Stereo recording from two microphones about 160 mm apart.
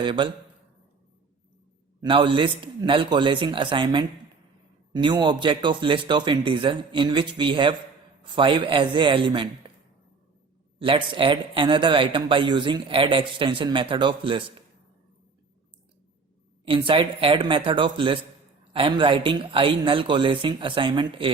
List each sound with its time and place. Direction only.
0.0 s speech: 30° right (ahead or behind)
2.0 s speech: 30° right (ahead or behind)
10.8 s speech: 35° right (ahead or behind)
16.6 s speech: 35° right (ahead or behind)